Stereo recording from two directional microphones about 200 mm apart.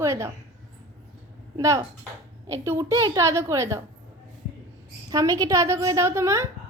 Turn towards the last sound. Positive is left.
turn(degrees=-15)  # may be behind; listen again after turning